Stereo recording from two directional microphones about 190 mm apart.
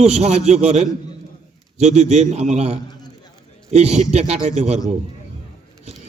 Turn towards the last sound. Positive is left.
turn(degrees=-35)  # may be behind; listen again after turning